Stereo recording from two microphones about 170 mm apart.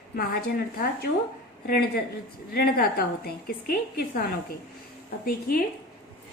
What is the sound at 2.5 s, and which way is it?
A woman's voice, 65° left (ahead or behind).